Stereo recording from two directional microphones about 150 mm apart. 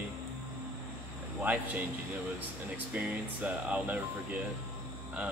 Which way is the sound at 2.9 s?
10° right (ahead or behind).